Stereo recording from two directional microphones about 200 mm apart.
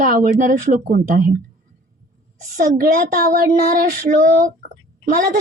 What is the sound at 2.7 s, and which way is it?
Speech, 45° right (ahead or behind).